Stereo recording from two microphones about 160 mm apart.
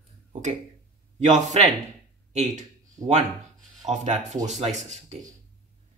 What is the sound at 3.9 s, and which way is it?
Speech, 45° right (ahead or behind).